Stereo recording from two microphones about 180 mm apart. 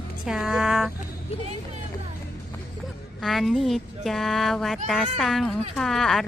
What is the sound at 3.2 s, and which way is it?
Speech, centre (ahead or behind).